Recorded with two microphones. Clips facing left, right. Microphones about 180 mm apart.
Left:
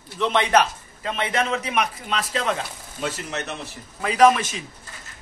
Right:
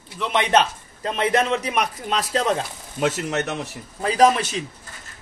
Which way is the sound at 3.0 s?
90° right.